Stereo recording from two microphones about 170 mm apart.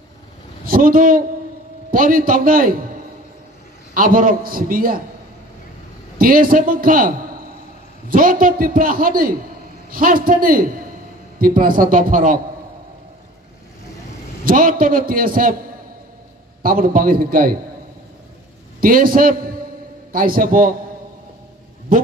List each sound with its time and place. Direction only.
0.7 s a man's voice: 60° right (ahead or behind)
3.9 s a man's voice: 55° right (ahead or behind)
6.1 s a man's voice: 55° right (ahead or behind)
14.4 s a man's voice: 55° right (ahead or behind)
16.6 s a man's voice: 55° right (ahead or behind)
18.8 s a man's voice: 55° right (ahead or behind)